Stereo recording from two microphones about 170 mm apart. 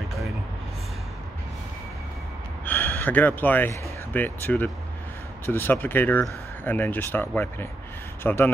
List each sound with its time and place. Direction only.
2.6 s gasp: 10° left (ahead or behind)
4.1 s speech: 10° left (ahead or behind)